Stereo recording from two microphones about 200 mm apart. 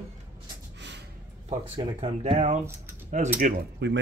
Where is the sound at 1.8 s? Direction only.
25° right (ahead or behind).